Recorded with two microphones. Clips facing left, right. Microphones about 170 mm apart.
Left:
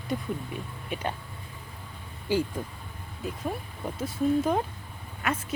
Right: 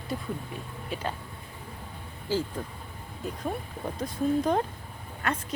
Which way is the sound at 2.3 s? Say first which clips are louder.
Left 2 dB; 15° left (ahead or behind).